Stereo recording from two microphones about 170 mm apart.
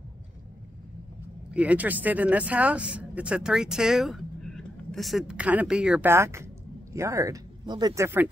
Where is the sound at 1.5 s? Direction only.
10° right (ahead or behind).